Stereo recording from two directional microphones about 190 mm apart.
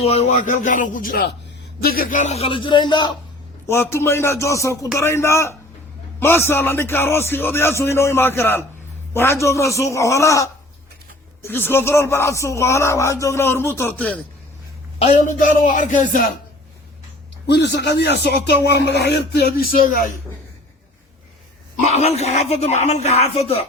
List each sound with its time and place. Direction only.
0.0 s a man's voice: 35° left (ahead or behind)
3.7 s a man's voice: 15° left (ahead or behind)
15.0 s speech: 40° left (ahead or behind)
17.5 s a man's voice: 65° left (ahead or behind)
21.8 s a man's voice: 35° left (ahead or behind)